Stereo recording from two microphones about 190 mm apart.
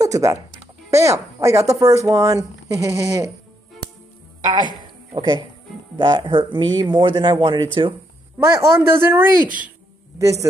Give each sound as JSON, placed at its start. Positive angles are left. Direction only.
{"t": 0.0, "sound": "speech", "side_deg": -15}
{"t": 5.1, "sound": "speech", "side_deg": -20}
{"t": 8.4, "sound": "speech", "side_deg": -15}